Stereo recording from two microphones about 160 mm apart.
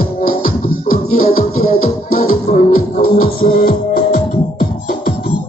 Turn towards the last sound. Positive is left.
turn(degrees=60)  # may be behind; listen again after turning